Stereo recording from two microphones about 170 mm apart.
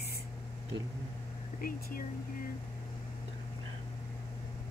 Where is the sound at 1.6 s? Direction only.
55° left (ahead or behind).